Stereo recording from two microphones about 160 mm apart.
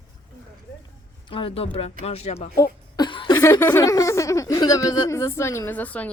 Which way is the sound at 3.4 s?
15° left (ahead or behind).